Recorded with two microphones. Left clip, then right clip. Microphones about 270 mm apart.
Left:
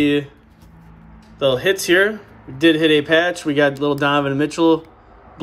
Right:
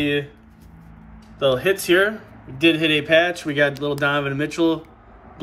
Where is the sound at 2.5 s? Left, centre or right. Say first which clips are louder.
Left 4 dB; centre.